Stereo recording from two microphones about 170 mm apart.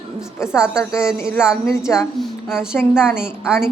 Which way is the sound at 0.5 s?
5° right (ahead or behind).